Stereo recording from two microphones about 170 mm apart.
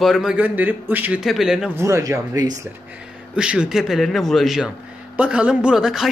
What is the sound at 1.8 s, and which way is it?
Speech, 15° right (ahead or behind).